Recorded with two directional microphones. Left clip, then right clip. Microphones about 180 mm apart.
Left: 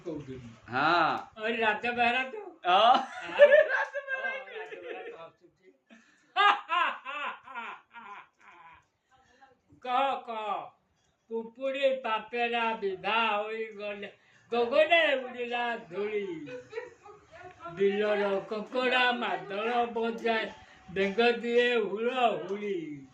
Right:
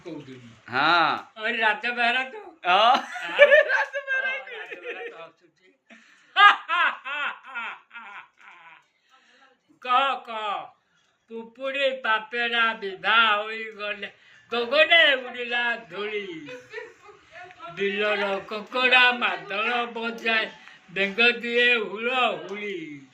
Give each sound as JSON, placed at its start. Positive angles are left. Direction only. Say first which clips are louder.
{"t": 0.6, "sound": "speech", "louder": "right 5 dB", "side_deg": -10}
{"t": 1.4, "sound": "speech", "louder": "right 5 dB", "side_deg": 20}
{"t": 2.6, "sound": "speech", "louder": "right 3 dB", "side_deg": -15}
{"t": 3.3, "sound": "chuckle", "louder": "right 4 dB", "side_deg": -15}
{"t": 6.3, "sound": "a sound", "louder": "right 8 dB", "side_deg": 10}
{"t": 9.8, "sound": "speech", "louder": "right 6 dB", "side_deg": 15}
{"t": 11.6, "sound": "speech", "louder": "right 4 dB", "side_deg": 10}
{"t": 17.7, "sound": "speech", "louder": "right 3 dB", "side_deg": 15}